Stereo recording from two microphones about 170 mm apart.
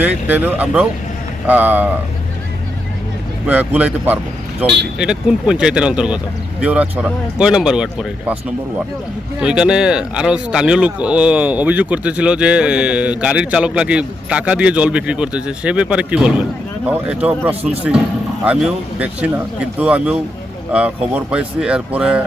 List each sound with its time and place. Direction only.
0.0 s speech: 10° right (ahead or behind)
3.4 s speech: 10° right (ahead or behind)
4.6 s speech: 75° right (ahead or behind)
4.9 s speech: 5° right (ahead or behind)
17.5 s speech: 35° right (ahead or behind)
18.4 s speech: 5° right (ahead or behind)